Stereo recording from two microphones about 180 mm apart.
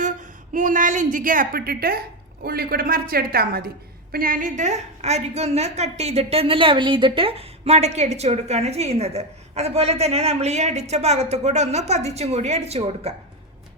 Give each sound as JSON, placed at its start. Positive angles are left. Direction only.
{"t": 0.0, "sound": "a woman's voice", "side_deg": -45}